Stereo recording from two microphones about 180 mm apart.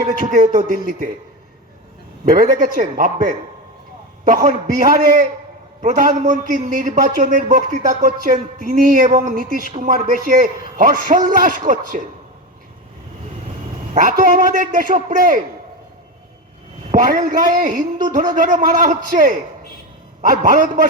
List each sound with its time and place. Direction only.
0.1 s a man's voice: 45° right (ahead or behind)
2.3 s a man's voice: 50° right (ahead or behind)
13.9 s a man's voice: 45° right (ahead or behind)
16.9 s a man's voice: 45° right (ahead or behind)